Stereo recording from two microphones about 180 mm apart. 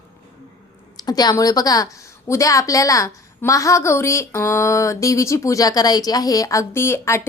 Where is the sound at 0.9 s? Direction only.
20° left (ahead or behind).